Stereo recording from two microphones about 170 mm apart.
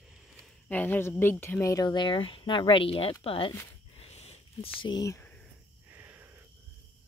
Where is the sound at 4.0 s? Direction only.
40° left (ahead or behind); by 5.4 s 15° left (ahead or behind).